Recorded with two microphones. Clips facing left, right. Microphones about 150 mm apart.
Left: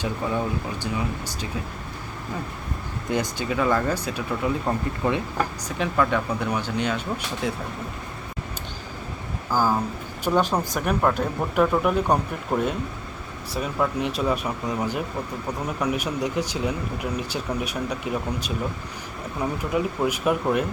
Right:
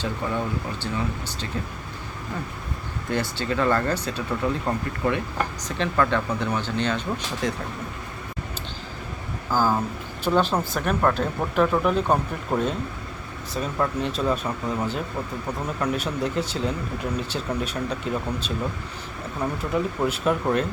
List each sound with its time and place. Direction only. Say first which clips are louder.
0.0 s speech: left 1 dB; 10° left (ahead or behind)
3.1 s speech: left 1 dB; 15° left (ahead or behind)
9.5 s speech: even; 15° left (ahead or behind)
19.7 s speech: left 1 dB; 10° left (ahead or behind)